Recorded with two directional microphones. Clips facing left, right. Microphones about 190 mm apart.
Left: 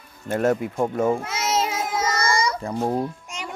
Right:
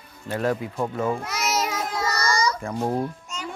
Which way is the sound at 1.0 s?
20° left (ahead or behind).